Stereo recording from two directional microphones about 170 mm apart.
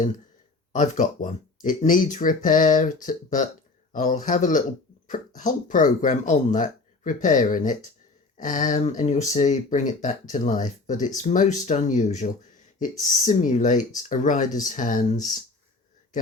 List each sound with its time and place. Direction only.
0.7 s speech: 45° left (ahead or behind)